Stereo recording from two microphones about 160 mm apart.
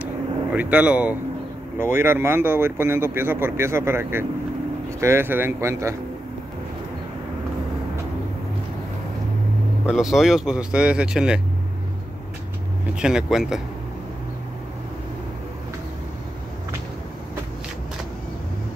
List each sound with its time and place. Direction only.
0.6 s speech: 10° right (ahead or behind)
9.8 s speech: centre (ahead or behind)
13.0 s speech: 5° right (ahead or behind)